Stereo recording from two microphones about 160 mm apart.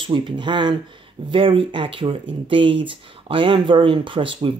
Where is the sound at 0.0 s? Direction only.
30° right (ahead or behind).